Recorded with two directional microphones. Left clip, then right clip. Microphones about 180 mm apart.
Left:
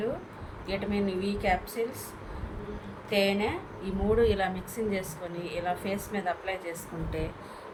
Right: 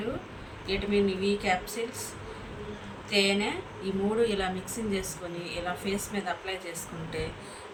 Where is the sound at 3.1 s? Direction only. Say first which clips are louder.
Right 1 dB; 15° left (ahead or behind).